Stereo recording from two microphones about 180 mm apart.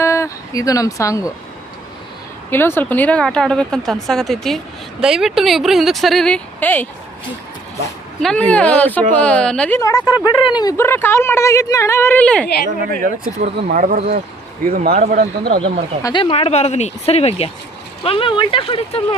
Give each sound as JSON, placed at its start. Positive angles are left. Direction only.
{"t": 0.0, "sound": "a sound", "side_deg": 15}
{"t": 2.5, "sound": "speech", "side_deg": 10}
{"t": 8.2, "sound": "a woman's voice", "side_deg": 5}
{"t": 13.4, "sound": "speech", "side_deg": -45}
{"t": 15.4, "sound": "speech", "side_deg": -30}
{"t": 16.0, "sound": "speech", "side_deg": 25}